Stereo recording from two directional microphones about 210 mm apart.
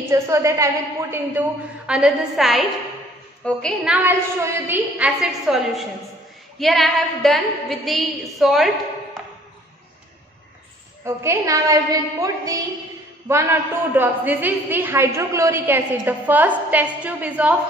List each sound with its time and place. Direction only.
0.1 s a woman's voice: 15° right (ahead or behind)
11.1 s a woman's voice: 15° right (ahead or behind)